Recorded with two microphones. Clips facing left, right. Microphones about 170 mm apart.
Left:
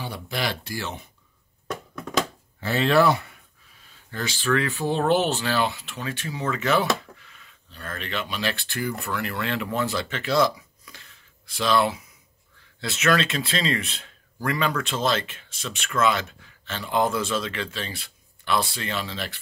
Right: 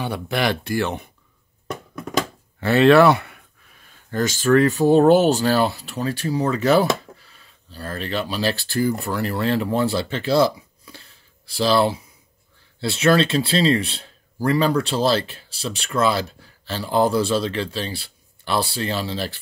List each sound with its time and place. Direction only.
0.0 s speech: 60° right (ahead or behind)
2.6 s speech: 65° right (ahead or behind); by 19.3 s 30° right (ahead or behind)